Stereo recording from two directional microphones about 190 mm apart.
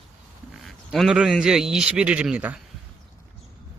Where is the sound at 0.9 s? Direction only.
Centre (ahead or behind).